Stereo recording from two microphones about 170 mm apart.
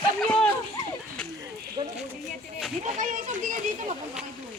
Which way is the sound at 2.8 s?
50° right (ahead or behind).